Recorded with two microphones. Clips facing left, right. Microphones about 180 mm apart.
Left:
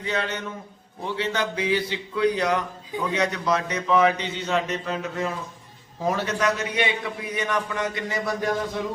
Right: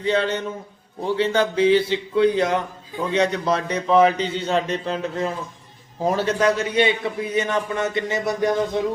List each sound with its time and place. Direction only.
0.0 s a man's voice: 30° right (ahead or behind)